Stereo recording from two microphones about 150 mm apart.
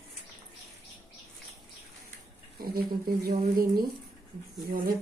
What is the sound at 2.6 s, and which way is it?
Speech, 85° right.